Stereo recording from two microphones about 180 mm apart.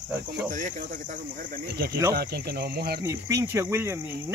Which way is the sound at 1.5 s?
60° right (ahead or behind).